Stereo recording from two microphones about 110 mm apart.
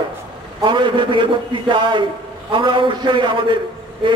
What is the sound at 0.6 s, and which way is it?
A man's voice, 45° right (ahead or behind).